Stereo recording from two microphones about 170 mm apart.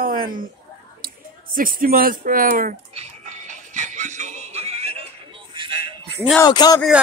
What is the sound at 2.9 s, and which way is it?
Music, 40° right (ahead or behind).